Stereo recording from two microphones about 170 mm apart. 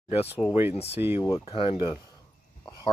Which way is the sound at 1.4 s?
35° left (ahead or behind).